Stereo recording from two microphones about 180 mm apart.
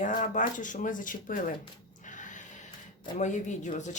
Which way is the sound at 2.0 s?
45° left (ahead or behind).